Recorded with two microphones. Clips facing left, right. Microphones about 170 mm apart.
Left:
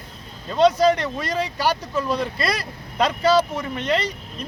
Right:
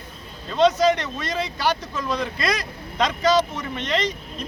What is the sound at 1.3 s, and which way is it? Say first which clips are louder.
Speech: left 1 dB; 10° left (ahead or behind).